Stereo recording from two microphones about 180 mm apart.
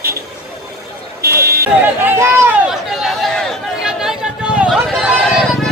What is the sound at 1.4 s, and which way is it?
Buzzer, 60° right (ahead or behind).